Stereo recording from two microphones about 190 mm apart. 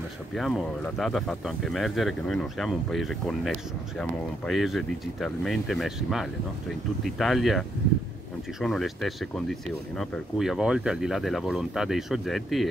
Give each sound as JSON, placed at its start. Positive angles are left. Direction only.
{"t": 0.3, "sound": "speech", "side_deg": 0}